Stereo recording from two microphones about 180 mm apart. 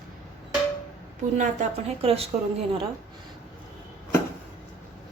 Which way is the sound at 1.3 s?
40° right (ahead or behind).